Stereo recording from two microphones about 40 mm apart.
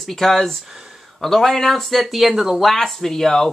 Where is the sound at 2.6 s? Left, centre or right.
Centre.